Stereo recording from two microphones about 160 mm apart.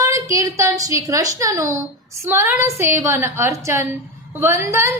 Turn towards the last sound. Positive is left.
turn(degrees=-15)  # may be behind; listen again after turning